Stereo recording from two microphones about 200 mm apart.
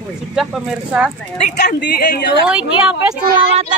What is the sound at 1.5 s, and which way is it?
Speech, 55° left (ahead or behind).